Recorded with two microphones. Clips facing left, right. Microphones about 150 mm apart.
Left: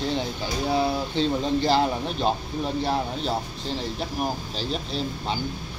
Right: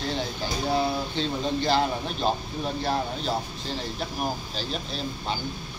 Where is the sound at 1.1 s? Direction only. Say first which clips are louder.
Left 4 dB; 25° left (ahead or behind).